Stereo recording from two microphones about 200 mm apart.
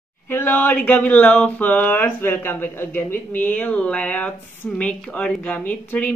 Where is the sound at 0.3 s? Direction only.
10° left (ahead or behind).